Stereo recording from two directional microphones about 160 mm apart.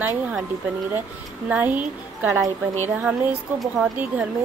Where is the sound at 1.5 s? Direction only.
10° right (ahead or behind).